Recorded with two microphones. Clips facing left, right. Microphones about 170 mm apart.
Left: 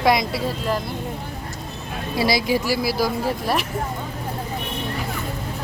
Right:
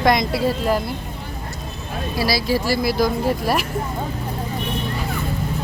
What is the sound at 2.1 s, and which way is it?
Speech, 20° left (ahead or behind).